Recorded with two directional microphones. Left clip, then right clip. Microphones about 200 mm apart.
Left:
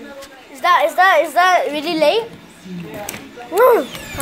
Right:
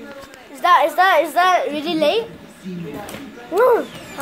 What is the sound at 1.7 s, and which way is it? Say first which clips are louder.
Speech: left 3 dB; 15° left (ahead or behind).